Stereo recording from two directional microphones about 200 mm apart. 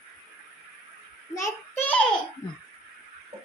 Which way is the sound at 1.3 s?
15° left (ahead or behind).